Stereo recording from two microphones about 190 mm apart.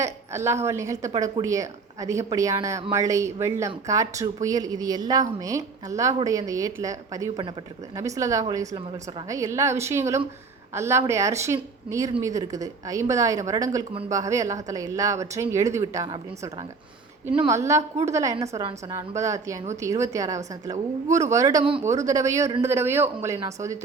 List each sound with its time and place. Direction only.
0.0 s a woman's voice: 15° right (ahead or behind)
21.6 s a woman's voice: 30° right (ahead or behind)
21.8 s speech: 15° right (ahead or behind)